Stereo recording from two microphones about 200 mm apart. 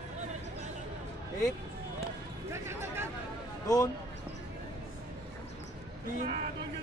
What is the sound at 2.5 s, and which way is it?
Speech, 15° right (ahead or behind).